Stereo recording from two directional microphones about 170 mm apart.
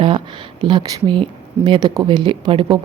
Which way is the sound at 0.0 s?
30° right (ahead or behind).